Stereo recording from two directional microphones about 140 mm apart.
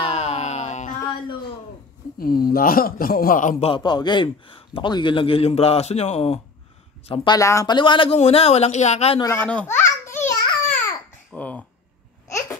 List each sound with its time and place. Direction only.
0.1 s a sound: 50° left (ahead or behind)
2.1 s speech: 90° left
3.6 s a man's voice: 35° left (ahead or behind)
7.2 s speech: 20° left (ahead or behind)
7.7 s a man's voice: 35° left (ahead or behind); by 9.2 s 50° left (ahead or behind)
9.2 s a sound: 15° left (ahead or behind)
11.3 s speech: 10° left (ahead or behind)
12.3 s babbling: 20° left (ahead or behind)